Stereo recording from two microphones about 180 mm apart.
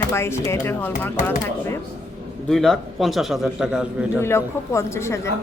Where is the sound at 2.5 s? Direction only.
Centre (ahead or behind).